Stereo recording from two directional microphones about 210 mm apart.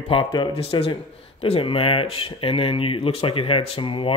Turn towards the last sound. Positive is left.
turn(degrees=25)  # may be behind; listen again after turning